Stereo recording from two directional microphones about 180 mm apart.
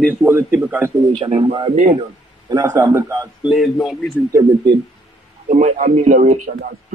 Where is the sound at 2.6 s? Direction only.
15° right (ahead or behind).